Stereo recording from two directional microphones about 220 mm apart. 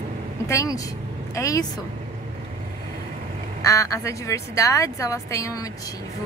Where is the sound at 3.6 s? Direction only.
15° left (ahead or behind).